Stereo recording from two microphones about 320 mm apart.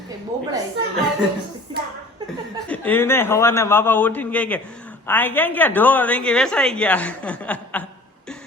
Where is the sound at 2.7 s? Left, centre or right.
Centre.